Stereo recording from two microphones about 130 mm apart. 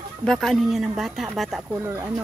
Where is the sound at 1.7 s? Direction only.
20° right (ahead or behind).